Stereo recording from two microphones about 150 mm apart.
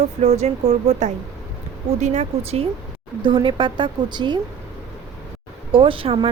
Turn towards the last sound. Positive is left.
turn(degrees=-35)  # may be behind; listen again after turning